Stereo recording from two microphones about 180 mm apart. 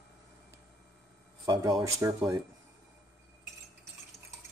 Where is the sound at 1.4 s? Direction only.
20° right (ahead or behind).